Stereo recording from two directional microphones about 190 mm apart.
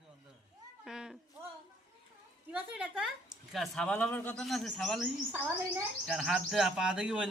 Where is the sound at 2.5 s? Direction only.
5° right (ahead or behind).